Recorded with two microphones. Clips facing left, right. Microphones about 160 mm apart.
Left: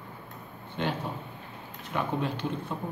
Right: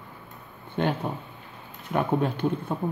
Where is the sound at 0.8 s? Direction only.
50° right (ahead or behind).